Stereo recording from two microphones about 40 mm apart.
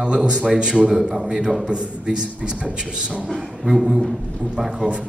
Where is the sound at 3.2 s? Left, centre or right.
Centre.